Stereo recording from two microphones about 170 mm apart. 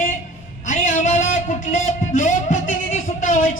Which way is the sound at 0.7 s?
45° left (ahead or behind).